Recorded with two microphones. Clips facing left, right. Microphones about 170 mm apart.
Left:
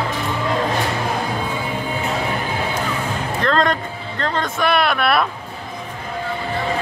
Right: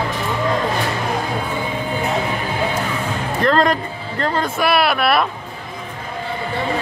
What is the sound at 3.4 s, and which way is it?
Speech, 5° right (ahead or behind).